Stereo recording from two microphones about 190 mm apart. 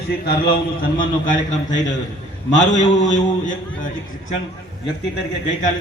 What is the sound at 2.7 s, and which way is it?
Speech, 40° left (ahead or behind).